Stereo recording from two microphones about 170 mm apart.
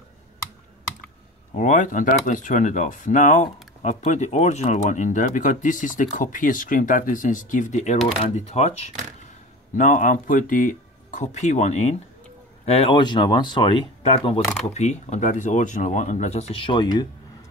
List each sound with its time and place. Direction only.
1.6 s speech: 45° left (ahead or behind)
9.8 s speech: 50° left (ahead or behind); by 17.1 s 25° left (ahead or behind)